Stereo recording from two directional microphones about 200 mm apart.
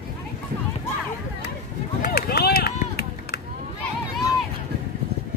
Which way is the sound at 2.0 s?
50° left (ahead or behind).